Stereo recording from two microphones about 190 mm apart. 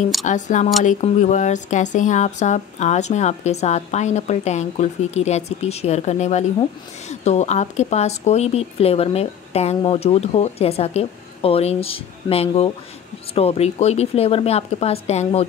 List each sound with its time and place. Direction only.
0.2 s speech: 40° left (ahead or behind)